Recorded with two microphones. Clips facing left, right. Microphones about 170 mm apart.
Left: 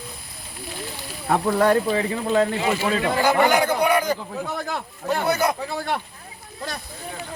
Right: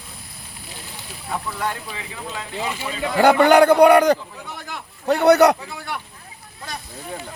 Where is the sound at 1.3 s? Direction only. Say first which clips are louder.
Left 9 dB; 60° left (ahead or behind).